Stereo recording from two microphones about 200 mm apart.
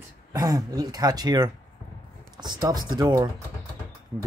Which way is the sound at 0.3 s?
20° right (ahead or behind).